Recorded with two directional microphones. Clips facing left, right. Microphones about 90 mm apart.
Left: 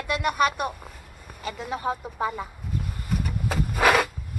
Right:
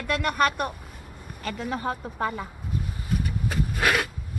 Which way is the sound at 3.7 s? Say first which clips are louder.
Left 5 dB; 20° left (ahead or behind).